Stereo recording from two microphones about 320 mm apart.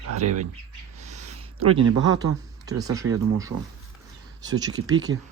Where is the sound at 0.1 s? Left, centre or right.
Right.